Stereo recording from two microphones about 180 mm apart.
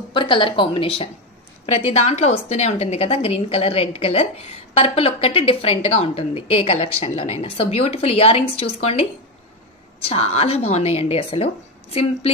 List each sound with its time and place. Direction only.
0.1 s a woman's voice: 25° left (ahead or behind)
10.0 s a woman's voice: 35° left (ahead or behind)